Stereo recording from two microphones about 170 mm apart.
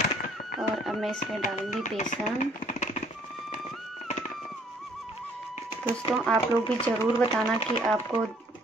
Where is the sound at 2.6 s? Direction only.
45° left (ahead or behind).